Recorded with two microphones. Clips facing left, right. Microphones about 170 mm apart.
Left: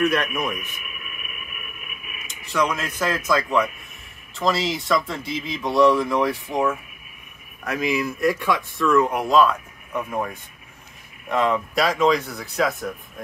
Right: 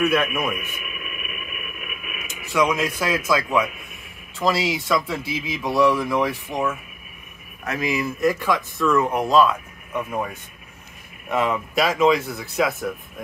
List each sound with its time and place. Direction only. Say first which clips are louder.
0.0 s a man's voice: right 1 dB; 10° right (ahead or behind)
0.9 s radio: right 5 dB; 90° right
2.5 s a man's voice: right 3 dB; 10° right (ahead or behind)
11.2 s speech: left 1 dB; 5° right (ahead or behind)